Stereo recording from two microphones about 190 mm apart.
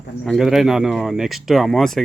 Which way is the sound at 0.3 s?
Centre (ahead or behind).